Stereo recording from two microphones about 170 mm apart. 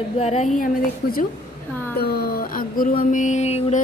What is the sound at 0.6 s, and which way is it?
Speech, 55° left (ahead or behind).